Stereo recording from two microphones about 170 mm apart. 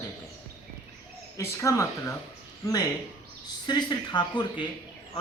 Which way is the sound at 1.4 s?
15° left (ahead or behind).